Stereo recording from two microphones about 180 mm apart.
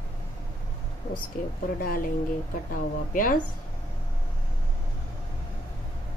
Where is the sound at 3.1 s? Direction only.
50° left (ahead or behind).